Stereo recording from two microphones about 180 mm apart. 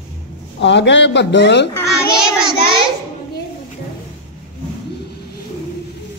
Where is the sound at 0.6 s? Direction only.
80° left.